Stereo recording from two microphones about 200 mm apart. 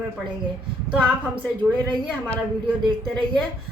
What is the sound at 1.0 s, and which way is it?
Speech, 5° right (ahead or behind).